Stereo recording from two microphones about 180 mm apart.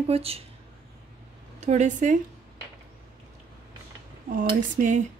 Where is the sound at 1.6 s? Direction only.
40° right (ahead or behind).